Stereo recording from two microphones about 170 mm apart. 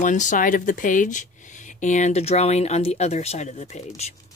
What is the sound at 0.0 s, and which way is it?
Speech, 45° left (ahead or behind).